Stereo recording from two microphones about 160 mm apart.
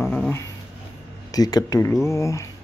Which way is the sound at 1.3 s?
25° left (ahead or behind).